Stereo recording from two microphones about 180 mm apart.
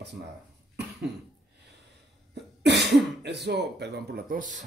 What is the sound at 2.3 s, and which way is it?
Speech, 70° right (ahead or behind).